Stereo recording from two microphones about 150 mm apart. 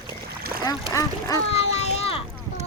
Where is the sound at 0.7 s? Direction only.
25° left (ahead or behind).